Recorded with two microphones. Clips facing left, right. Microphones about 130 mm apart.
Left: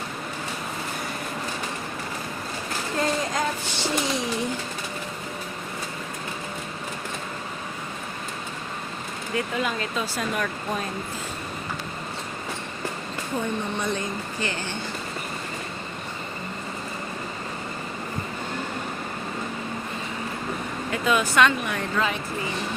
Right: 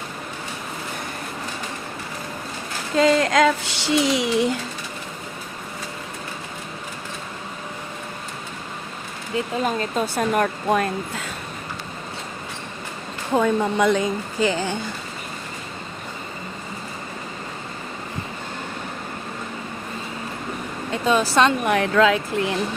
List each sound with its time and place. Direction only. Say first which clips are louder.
2.9 s speech: right 9 dB; 90° right
9.3 s speech: right 3 dB; 25° right (ahead or behind)
9.6 s speech: right 5 dB; 40° right (ahead or behind)
10.7 s speech: right 8 dB; 70° right (ahead or behind)
13.3 s speech: right 9 dB; 90° right
20.9 s speech: right 3 dB; 30° right (ahead or behind)
21.6 s speech: right 9 dB; 75° right (ahead or behind)